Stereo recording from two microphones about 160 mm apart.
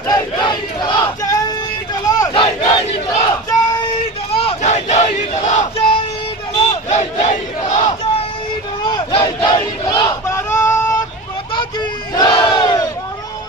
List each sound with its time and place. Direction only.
0.1 s battle cry: 25° left (ahead or behind)
2.3 s battle cry: 35° left (ahead or behind)
4.3 s battle cry: 35° left (ahead or behind)
8.8 s battle cry: 30° left (ahead or behind)
10.2 s a sound: 15° left (ahead or behind)
12.1 s battle cry: 25° left (ahead or behind)